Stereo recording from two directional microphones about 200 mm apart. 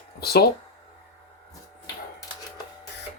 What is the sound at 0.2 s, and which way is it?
Speech, 50° left (ahead or behind).